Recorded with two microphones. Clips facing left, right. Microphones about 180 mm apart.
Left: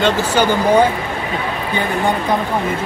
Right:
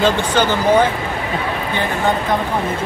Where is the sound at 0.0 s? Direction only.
10° left (ahead or behind).